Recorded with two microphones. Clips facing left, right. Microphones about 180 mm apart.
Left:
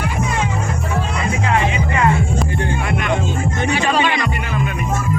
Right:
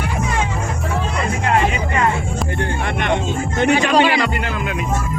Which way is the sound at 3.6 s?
60° right (ahead or behind).